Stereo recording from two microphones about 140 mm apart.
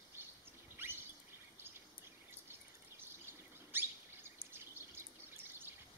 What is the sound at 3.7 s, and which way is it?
Bird, 15° right (ahead or behind).